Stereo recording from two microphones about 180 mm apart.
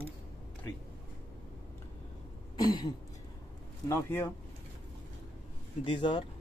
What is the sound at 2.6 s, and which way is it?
Speech, 25° left (ahead or behind).